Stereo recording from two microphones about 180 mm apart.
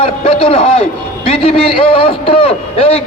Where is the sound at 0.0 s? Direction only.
30° left (ahead or behind).